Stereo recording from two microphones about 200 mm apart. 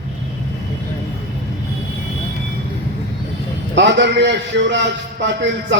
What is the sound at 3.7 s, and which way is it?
A man's voice, 60° right (ahead or behind).